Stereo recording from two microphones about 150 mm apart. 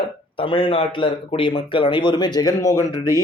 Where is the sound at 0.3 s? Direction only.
35° left (ahead or behind).